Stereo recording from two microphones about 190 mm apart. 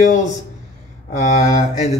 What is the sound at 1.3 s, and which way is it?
Speech, 40° left (ahead or behind).